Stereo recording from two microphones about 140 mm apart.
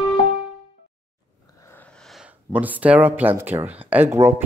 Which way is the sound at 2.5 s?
10° right (ahead or behind).